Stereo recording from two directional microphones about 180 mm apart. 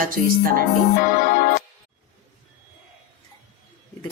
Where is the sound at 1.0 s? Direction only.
50° left (ahead or behind).